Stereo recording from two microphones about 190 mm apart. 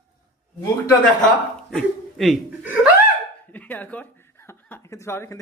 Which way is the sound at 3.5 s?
10° left (ahead or behind).